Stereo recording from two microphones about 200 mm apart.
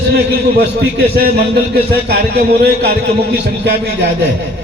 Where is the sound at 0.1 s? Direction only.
55° right (ahead or behind).